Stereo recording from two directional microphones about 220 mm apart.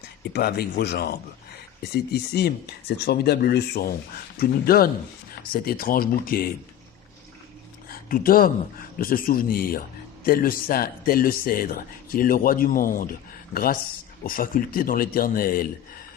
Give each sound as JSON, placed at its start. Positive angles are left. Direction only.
{"t": 0.3, "sound": "speech", "side_deg": 45}
{"t": 7.9, "sound": "speech", "side_deg": 40}